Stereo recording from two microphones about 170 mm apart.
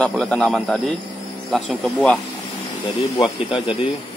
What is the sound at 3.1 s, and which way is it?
Speech, 20° left (ahead or behind).